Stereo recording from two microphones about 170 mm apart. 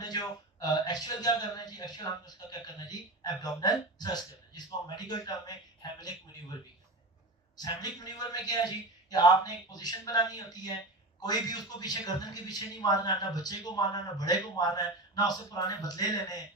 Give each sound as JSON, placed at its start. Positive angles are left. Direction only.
{"t": 0.0, "sound": "a man's voice", "side_deg": 25}
{"t": 7.5, "sound": "a man's voice", "side_deg": 25}